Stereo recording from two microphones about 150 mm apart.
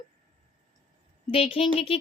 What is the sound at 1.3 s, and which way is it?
Speech, 40° left (ahead or behind).